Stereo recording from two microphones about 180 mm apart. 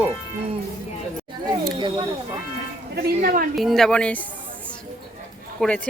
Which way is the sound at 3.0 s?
55° right (ahead or behind).